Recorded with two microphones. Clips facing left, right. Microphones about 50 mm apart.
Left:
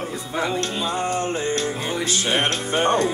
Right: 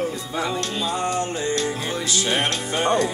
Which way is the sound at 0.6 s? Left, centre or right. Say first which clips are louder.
Left 1 dB; left.